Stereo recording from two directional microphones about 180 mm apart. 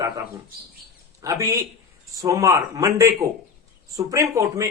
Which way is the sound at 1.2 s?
20° right (ahead or behind).